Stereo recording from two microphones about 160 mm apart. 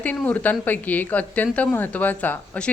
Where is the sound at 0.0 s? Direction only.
10° left (ahead or behind).